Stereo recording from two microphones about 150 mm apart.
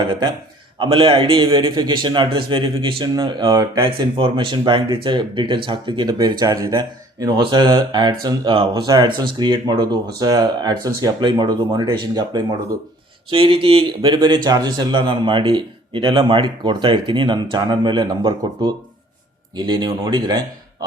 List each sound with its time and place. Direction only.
0.1 s speech: 30° right (ahead or behind)